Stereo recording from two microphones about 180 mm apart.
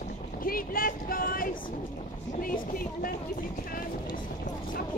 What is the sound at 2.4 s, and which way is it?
Speech, 50° left (ahead or behind).